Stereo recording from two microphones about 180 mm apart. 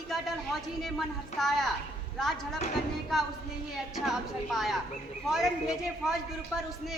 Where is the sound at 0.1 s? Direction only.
Centre (ahead or behind).